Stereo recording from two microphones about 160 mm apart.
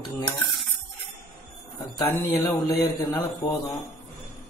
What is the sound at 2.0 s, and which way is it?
A man's voice, 25° left (ahead or behind).